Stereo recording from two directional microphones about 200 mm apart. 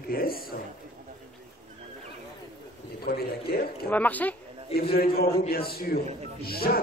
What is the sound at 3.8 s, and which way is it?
Speech, 10° left (ahead or behind).